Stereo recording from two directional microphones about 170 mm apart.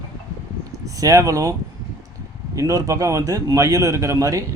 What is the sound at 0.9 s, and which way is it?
Speech, 20° right (ahead or behind).